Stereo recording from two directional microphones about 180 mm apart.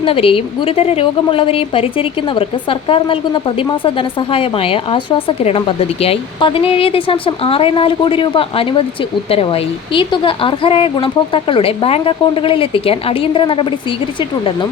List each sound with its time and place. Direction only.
0.0 s a woman's voice: 30° left (ahead or behind)